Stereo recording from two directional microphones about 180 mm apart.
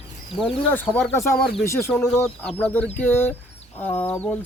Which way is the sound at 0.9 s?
10° left (ahead or behind).